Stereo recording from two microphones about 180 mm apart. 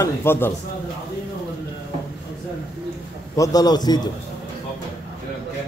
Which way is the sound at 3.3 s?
20° left (ahead or behind).